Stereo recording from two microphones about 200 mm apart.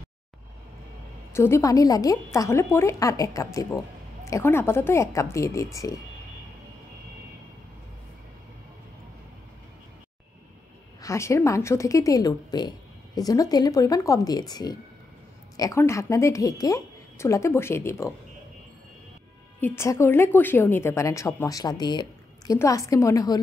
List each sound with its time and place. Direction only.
1.3 s a woman's voice: 15° left (ahead or behind)
11.0 s a woman's voice: 15° left (ahead or behind)
19.6 s a woman's voice: 10° left (ahead or behind)